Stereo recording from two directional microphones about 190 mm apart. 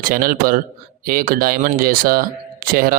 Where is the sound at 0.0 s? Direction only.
50° right (ahead or behind).